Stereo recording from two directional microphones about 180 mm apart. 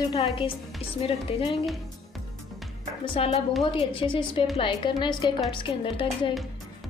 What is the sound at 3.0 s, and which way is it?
A woman's voice, 30° left (ahead or behind).